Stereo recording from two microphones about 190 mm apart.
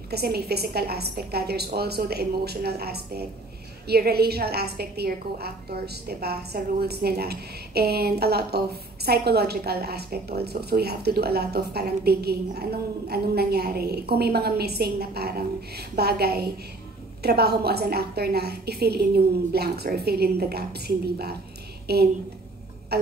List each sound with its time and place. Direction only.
0.1 s a woman's voice: 55° right (ahead or behind)